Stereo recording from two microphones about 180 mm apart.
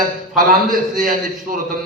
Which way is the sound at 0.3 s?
50° right (ahead or behind).